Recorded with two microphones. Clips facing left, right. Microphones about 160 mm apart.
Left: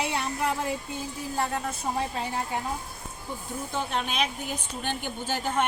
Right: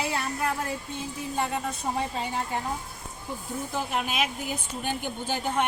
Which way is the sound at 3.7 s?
5° right (ahead or behind).